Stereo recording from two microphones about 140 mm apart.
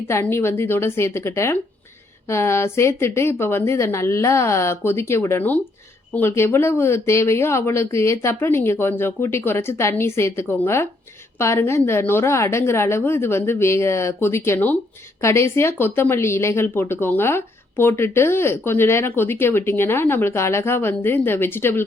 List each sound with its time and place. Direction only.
0.1 s a woman's voice: 20° left (ahead or behind)